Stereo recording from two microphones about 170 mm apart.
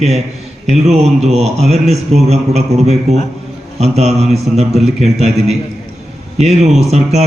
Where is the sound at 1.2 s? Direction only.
40° right (ahead or behind).